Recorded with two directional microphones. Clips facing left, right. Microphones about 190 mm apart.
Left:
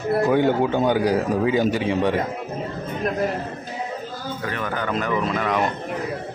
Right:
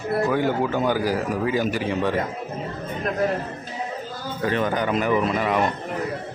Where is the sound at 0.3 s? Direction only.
25° left (ahead or behind).